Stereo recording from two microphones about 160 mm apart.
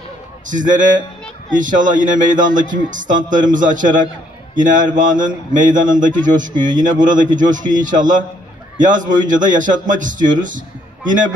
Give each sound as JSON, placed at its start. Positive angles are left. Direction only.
{"t": 0.5, "sound": "a man's voice", "side_deg": -55}